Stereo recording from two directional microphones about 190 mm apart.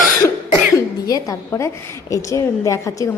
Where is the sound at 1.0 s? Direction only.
20° left (ahead or behind).